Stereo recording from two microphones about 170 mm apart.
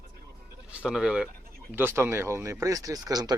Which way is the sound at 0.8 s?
5° right (ahead or behind).